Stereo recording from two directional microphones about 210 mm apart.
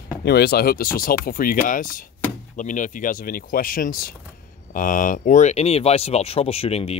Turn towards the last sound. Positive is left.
turn(degrees=30)  # may be behind; listen again after turning